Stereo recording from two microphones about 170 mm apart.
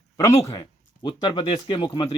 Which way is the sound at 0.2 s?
20° left (ahead or behind).